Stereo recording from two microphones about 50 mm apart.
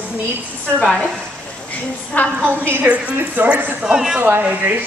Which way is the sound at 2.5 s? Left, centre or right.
Right.